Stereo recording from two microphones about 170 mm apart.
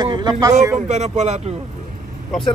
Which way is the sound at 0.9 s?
40° right (ahead or behind).